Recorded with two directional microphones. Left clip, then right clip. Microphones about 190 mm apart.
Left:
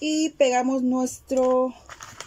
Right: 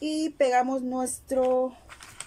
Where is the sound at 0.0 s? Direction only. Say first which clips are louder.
Left 4 dB; 5° left (ahead or behind).